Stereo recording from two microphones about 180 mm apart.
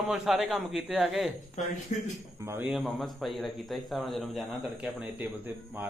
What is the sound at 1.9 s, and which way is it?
Speech, 40° left (ahead or behind).